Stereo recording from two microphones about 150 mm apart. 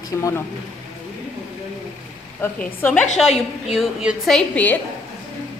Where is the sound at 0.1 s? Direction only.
20° left (ahead or behind).